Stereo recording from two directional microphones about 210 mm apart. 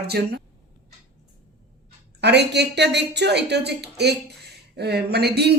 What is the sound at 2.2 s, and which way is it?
Speech, 55° right (ahead or behind).